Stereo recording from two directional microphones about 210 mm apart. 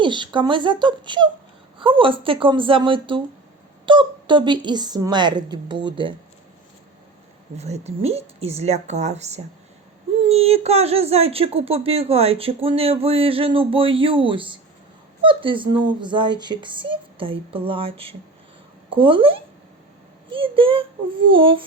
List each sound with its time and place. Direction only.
0.0 s speech: 20° right (ahead or behind)
7.5 s speech: 30° right (ahead or behind)